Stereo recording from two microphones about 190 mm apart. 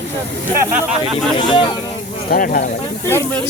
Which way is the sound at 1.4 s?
25° left (ahead or behind).